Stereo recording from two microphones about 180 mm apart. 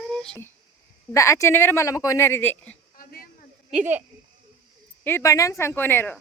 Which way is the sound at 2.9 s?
50° left (ahead or behind).